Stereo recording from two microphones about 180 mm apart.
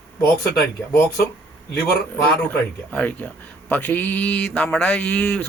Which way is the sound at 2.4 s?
5° left (ahead or behind).